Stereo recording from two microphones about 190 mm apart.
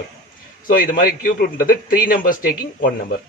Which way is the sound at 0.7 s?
50° left (ahead or behind).